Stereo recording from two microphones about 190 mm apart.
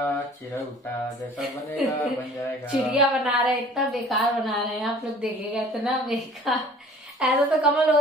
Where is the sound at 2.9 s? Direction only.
Centre (ahead or behind).